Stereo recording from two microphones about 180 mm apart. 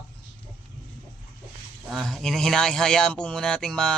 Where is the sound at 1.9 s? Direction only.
Centre (ahead or behind).